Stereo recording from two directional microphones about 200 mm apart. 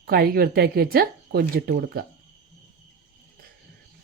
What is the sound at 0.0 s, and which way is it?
Speech, 50° right (ahead or behind).